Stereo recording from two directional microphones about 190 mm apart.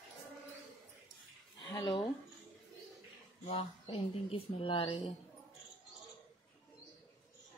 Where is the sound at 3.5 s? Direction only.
25° left (ahead or behind).